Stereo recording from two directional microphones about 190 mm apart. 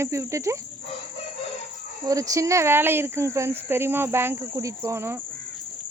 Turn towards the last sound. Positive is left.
turn(degrees=-15)  # may be behind; listen again after turning